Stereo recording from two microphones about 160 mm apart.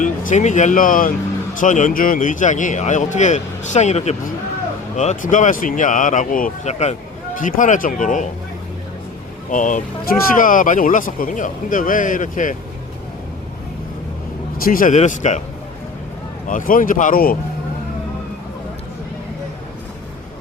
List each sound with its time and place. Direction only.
0.0 s speech: 55° left (ahead or behind)
7.3 s speech: 55° left (ahead or behind)
9.5 s speech: 55° left (ahead or behind)
14.6 s speech: 60° left (ahead or behind)
16.5 s speech: 55° left (ahead or behind)